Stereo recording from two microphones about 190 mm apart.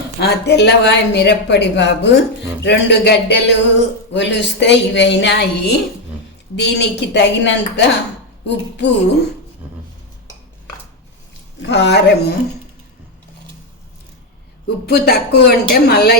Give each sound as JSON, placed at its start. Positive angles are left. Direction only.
{"t": 0.2, "sound": "a woman's voice", "side_deg": 60}
{"t": 11.6, "sound": "speech", "side_deg": 65}
{"t": 14.8, "sound": "speech", "side_deg": 60}